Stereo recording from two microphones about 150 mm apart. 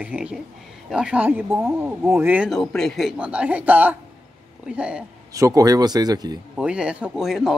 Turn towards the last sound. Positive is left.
turn(degrees=0)  # may be behind; listen again after turning